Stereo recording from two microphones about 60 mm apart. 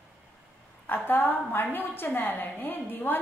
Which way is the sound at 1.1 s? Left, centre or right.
Left.